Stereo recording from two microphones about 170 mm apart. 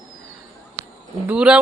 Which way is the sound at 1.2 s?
5° right (ahead or behind).